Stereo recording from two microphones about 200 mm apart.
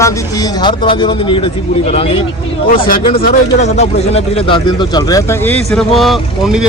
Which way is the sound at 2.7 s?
45° left (ahead or behind).